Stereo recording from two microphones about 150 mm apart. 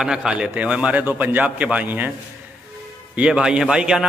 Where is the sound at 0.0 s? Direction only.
5° right (ahead or behind).